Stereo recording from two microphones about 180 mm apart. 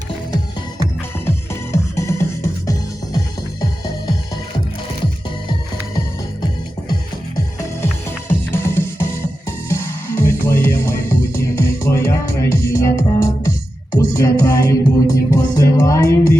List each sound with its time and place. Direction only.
1.7 s music: 15° left (ahead or behind)
8.4 s music: 15° left (ahead or behind)